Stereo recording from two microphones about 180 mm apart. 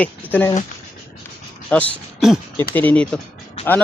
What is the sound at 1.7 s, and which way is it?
Speech, 10° left (ahead or behind).